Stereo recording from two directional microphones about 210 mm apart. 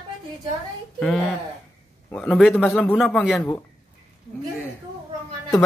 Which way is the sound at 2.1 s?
5° left (ahead or behind).